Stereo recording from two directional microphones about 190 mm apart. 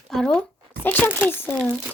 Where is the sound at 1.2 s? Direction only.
5° right (ahead or behind).